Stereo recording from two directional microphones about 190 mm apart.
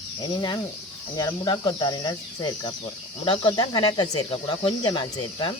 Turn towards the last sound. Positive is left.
turn(degrees=25)  # may be behind; listen again after turning